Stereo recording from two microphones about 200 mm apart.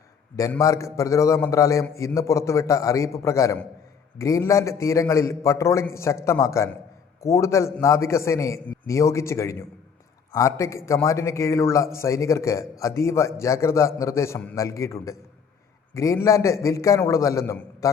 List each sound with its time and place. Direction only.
0.3 s a man's voice: 15° left (ahead or behind)